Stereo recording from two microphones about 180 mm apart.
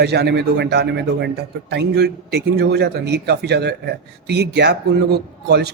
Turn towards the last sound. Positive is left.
turn(degrees=-65)  # may be behind; listen again after turning